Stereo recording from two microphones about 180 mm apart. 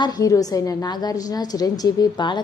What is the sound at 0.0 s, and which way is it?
A woman's voice, 20° left (ahead or behind).